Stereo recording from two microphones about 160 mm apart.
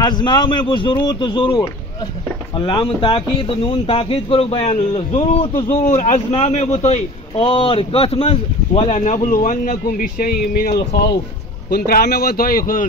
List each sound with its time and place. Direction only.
0.0 s speech: 25° left (ahead or behind)
5.5 s speech: 25° left (ahead or behind)
5.8 s a man's voice: 50° left (ahead or behind); by 11.1 s 85° left
11.7 s speech: 70° left (ahead or behind)